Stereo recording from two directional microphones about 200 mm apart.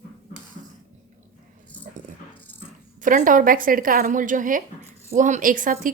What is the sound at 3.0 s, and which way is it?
A woman's voice, 40° right (ahead or behind).